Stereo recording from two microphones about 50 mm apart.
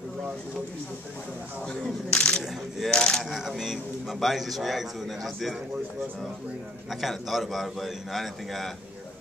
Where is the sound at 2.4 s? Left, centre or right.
Centre.